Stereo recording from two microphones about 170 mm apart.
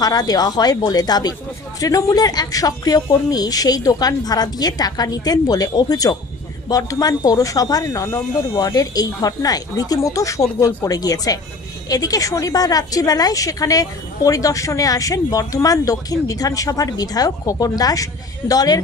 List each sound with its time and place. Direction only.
0.0 s speech: 20° left (ahead or behind)